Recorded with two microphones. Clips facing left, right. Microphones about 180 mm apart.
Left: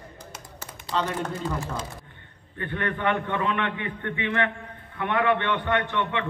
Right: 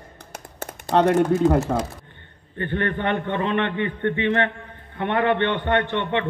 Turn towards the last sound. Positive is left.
turn(degrees=-30)  # may be behind; listen again after turning